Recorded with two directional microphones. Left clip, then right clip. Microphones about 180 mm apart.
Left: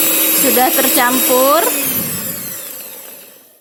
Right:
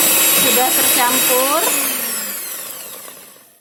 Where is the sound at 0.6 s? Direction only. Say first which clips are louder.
Left 3 dB; 35° left (ahead or behind).